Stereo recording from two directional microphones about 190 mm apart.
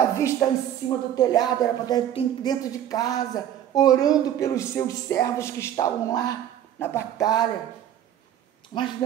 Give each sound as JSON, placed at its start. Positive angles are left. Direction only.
{"t": 0.2, "sound": "a woman's voice", "side_deg": 15}
{"t": 8.7, "sound": "a woman's voice", "side_deg": 20}